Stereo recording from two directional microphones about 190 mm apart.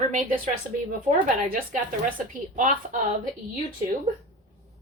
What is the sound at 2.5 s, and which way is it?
Speech, 45° right (ahead or behind).